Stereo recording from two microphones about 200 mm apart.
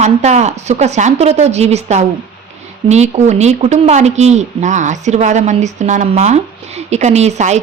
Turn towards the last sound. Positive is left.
turn(degrees=-35)  # may be behind; listen again after turning